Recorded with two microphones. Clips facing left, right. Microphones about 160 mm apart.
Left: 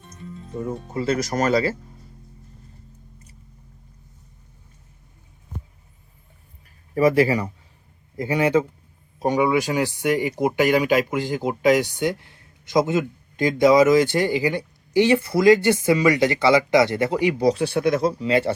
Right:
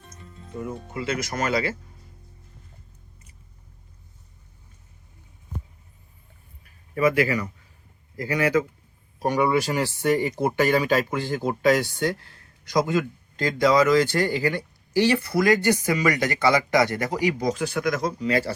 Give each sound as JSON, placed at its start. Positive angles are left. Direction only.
{"t": 0.6, "sound": "speech", "side_deg": 35}
{"t": 6.9, "sound": "speech", "side_deg": 35}